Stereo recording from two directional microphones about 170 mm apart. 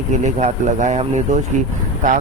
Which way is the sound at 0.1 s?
45° right (ahead or behind).